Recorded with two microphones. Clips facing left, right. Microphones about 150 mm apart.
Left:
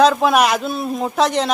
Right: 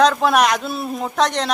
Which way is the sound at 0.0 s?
5° left (ahead or behind).